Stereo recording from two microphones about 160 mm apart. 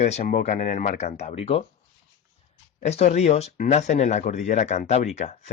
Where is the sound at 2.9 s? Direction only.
45° left (ahead or behind).